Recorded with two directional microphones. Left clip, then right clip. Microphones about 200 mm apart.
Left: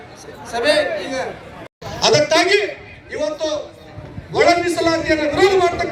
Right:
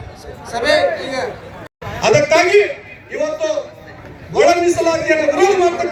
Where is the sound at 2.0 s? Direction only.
5° right (ahead or behind).